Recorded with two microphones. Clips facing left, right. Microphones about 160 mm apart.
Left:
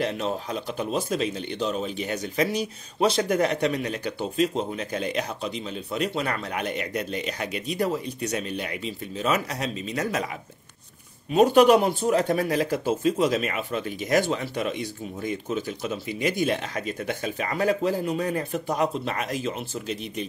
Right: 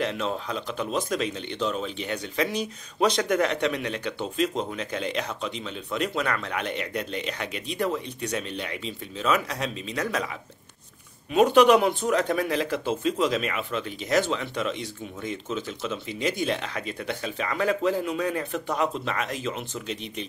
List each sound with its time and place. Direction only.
0.0 s speech: 40° left (ahead or behind)
11.3 s speech: 40° left (ahead or behind)